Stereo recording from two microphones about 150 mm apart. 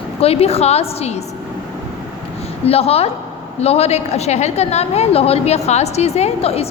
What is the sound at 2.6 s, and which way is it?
A woman's voice, 40° left (ahead or behind).